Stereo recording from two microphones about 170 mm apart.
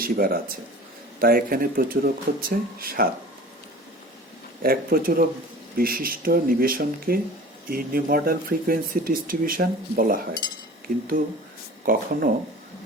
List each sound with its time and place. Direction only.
0.0 s speech: 60° right (ahead or behind)
4.6 s speech: 60° right (ahead or behind)